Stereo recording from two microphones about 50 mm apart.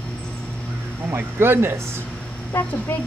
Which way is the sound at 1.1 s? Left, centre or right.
Right.